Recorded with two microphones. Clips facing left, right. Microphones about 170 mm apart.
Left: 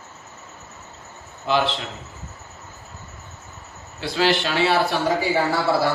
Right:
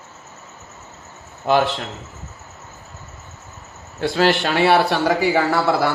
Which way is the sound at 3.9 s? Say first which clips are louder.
Right 3 dB; 50° right (ahead or behind).